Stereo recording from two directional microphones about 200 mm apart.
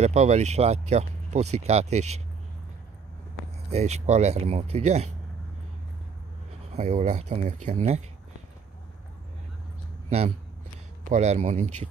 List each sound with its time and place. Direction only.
0.0 s speech: 35° right (ahead or behind)
3.7 s speech: 35° right (ahead or behind)
6.7 s speech: 35° right (ahead or behind)
10.0 s speech: 30° right (ahead or behind)